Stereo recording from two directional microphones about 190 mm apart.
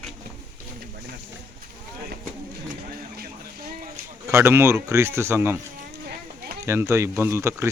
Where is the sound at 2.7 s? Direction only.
50° right (ahead or behind).